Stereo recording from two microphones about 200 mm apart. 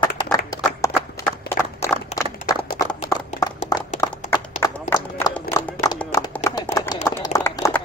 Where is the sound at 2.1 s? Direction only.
35° left (ahead or behind).